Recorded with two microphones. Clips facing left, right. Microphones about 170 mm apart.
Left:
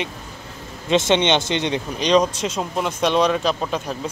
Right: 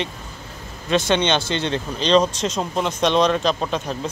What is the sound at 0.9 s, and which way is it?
Speech, 20° left (ahead or behind).